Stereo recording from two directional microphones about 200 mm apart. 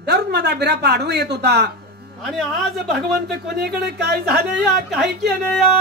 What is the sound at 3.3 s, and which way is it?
Speech, 55° right (ahead or behind).